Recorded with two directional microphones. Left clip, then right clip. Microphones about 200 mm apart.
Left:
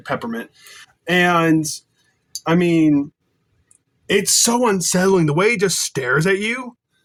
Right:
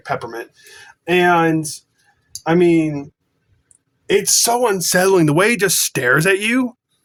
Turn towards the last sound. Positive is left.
turn(degrees=-50)  # may be behind; listen again after turning